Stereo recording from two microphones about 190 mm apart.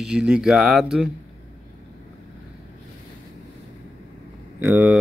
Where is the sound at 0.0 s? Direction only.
5° right (ahead or behind).